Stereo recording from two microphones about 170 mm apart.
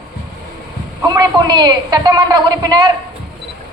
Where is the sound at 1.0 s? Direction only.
25° right (ahead or behind).